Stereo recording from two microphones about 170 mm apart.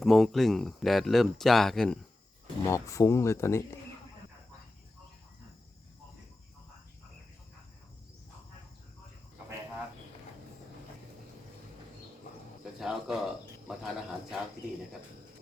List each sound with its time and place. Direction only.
0.0 s speech: centre (ahead or behind)
2.6 s speech: 20° left (ahead or behind)
12.8 s a sound: centre (ahead or behind)
13.7 s cricket: 5° right (ahead or behind)